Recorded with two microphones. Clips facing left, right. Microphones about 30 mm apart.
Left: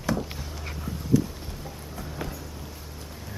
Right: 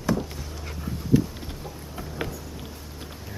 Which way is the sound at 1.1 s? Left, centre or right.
Right.